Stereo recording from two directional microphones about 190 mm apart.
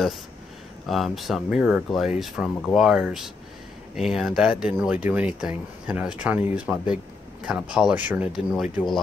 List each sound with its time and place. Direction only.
0.8 s speech: centre (ahead or behind)